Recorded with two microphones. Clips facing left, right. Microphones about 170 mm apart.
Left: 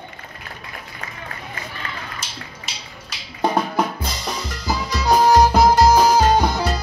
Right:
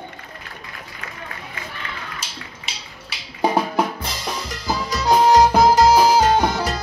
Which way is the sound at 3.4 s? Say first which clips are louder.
Right 1 dB; 5° right (ahead or behind).